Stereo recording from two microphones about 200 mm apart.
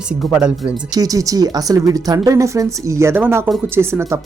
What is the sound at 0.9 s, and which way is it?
Speech, 20° right (ahead or behind).